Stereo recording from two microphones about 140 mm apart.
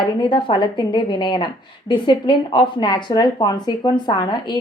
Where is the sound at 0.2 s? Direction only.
35° left (ahead or behind).